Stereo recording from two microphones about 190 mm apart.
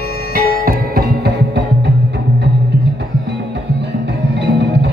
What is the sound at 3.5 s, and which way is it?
Music, 65° right (ahead or behind).